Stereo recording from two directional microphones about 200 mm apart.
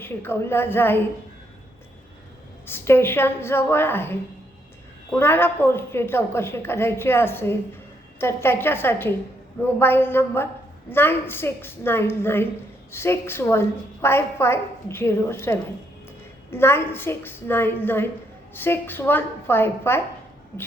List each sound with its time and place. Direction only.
0.0 s a woman's voice: 10° left (ahead or behind)
2.6 s a woman's voice: 10° left (ahead or behind)